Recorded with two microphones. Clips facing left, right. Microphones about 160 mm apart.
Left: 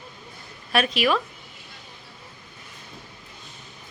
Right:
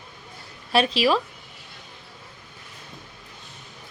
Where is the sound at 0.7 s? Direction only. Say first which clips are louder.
Right 2 dB; 30° right (ahead or behind).